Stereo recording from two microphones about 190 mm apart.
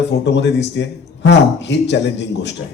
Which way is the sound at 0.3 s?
65° left (ahead or behind).